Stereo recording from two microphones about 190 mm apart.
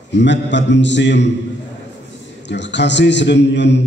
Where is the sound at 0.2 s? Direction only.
70° left (ahead or behind).